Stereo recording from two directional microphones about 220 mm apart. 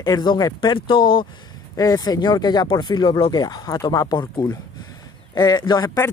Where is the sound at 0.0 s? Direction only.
20° left (ahead or behind).